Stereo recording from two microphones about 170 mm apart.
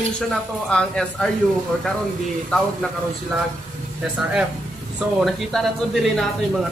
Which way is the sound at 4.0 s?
5° right (ahead or behind).